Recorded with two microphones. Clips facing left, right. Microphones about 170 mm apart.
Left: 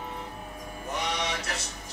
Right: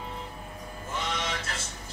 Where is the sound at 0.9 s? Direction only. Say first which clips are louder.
Left 1 dB; 70° left (ahead or behind).